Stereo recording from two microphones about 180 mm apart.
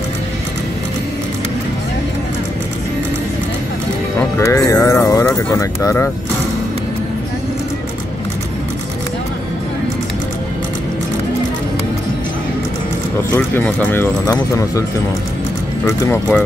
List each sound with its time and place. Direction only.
4.2 s music: 15° left (ahead or behind)
5.5 s speech: 15° left (ahead or behind)
13.3 s speech: 10° left (ahead or behind)
16.1 s speech: 10° left (ahead or behind)